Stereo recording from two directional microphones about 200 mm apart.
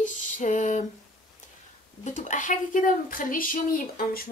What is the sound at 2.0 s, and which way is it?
Speech, 35° left (ahead or behind).